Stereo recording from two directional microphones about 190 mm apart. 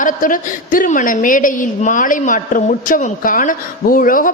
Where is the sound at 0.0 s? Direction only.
45° left (ahead or behind).